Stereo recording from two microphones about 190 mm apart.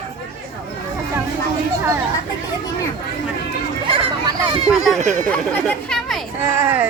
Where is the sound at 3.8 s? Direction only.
30° right (ahead or behind).